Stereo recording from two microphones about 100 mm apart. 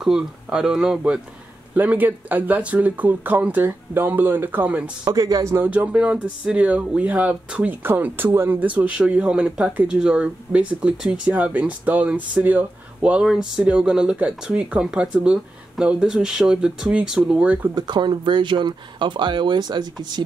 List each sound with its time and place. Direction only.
0.0 s speech: 5° right (ahead or behind)
1.8 s speech: 15° right (ahead or behind)
5.0 s speech: 40° right (ahead or behind)
5.7 s speech: 15° right (ahead or behind)
17.7 s speech: 45° right (ahead or behind)